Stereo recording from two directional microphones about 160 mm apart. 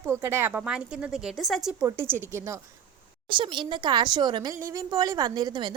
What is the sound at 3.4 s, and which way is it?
Speech, 30° right (ahead or behind).